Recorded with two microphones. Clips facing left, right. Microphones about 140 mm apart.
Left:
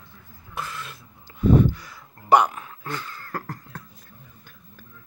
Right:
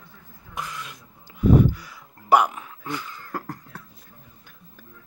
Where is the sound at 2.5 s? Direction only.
15° right (ahead or behind).